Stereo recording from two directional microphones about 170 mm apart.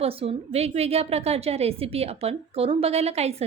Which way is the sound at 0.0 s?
35° right (ahead or behind).